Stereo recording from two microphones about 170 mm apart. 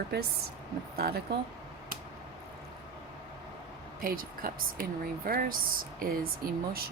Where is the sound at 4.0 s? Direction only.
55° right (ahead or behind).